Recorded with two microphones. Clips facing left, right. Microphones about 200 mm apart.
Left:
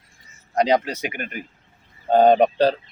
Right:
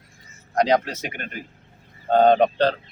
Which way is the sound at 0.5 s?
5° left (ahead or behind).